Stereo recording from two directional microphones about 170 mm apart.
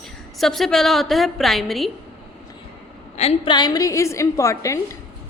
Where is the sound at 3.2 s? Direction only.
30° left (ahead or behind).